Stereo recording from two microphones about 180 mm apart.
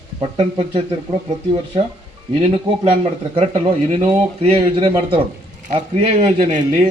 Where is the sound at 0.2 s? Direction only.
30° right (ahead or behind).